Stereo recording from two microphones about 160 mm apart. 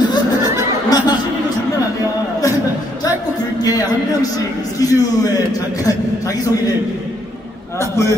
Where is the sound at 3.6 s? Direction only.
25° left (ahead or behind).